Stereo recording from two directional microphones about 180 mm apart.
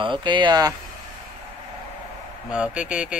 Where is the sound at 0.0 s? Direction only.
25° right (ahead or behind).